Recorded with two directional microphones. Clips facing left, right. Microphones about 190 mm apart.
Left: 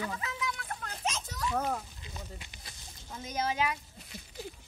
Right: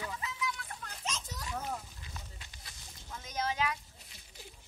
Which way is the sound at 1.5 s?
70° left (ahead or behind).